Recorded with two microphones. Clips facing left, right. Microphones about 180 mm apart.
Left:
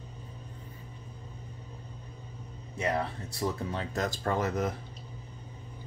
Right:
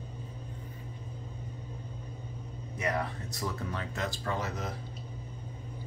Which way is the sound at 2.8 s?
30° left (ahead or behind).